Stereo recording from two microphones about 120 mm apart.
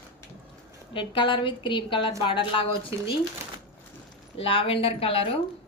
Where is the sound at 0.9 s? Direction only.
40° left (ahead or behind).